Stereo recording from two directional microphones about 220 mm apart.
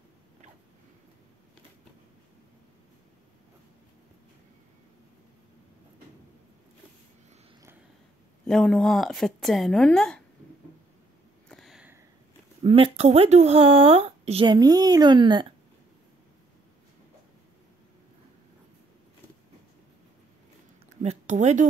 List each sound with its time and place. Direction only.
8.5 s speech: 5° left (ahead or behind)
11.4 s sniff: centre (ahead or behind)
12.6 s speech: 25° right (ahead or behind)
20.9 s speech: 30° right (ahead or behind)